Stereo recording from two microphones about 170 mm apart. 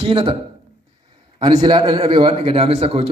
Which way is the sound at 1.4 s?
25° right (ahead or behind).